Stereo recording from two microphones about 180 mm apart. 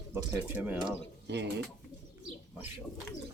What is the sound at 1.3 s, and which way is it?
Speech, 70° right (ahead or behind).